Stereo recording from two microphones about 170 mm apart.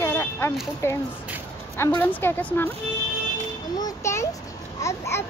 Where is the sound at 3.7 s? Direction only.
20° left (ahead or behind).